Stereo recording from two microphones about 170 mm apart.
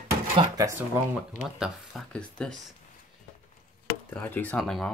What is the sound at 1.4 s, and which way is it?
Speech, centre (ahead or behind).